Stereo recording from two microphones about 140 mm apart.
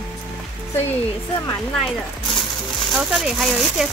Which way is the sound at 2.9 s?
Centre (ahead or behind).